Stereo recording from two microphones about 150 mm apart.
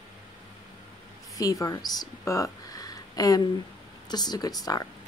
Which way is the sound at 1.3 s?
20° left (ahead or behind).